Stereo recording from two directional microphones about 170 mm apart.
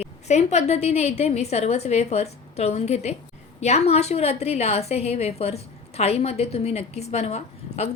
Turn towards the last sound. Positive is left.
turn(degrees=40)  # may be behind; listen again after turning